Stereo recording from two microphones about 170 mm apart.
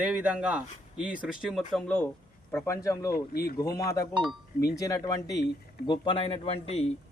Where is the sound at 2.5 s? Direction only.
15° left (ahead or behind).